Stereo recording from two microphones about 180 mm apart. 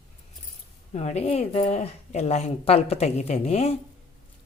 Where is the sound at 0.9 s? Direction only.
40° left (ahead or behind).